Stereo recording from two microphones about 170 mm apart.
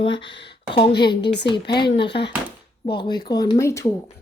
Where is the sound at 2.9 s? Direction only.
25° left (ahead or behind).